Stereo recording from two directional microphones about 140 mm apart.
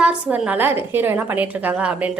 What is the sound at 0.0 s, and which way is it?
A woman's voice, 10° right (ahead or behind).